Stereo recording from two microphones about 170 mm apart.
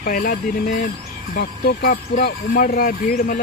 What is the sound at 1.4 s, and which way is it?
Speech, 70° left (ahead or behind).